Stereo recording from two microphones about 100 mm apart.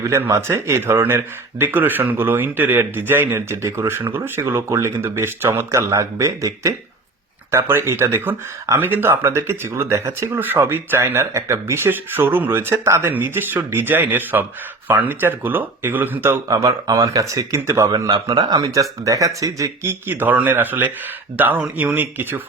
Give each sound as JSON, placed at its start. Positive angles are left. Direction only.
{"t": 0.1, "sound": "speech", "side_deg": -30}
{"t": 16.5, "sound": "speech", "side_deg": -35}